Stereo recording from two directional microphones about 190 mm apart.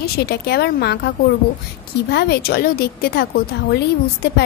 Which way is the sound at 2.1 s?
60° left (ahead or behind).